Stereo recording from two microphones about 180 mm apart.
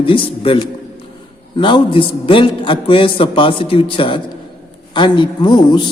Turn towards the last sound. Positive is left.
turn(degrees=25)  # may be behind; listen again after turning